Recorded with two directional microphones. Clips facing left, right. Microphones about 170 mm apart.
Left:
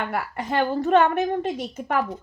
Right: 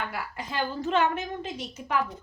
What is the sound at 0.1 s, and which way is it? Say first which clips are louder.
A woman's voice: left 8 dB; 60° left (ahead or behind).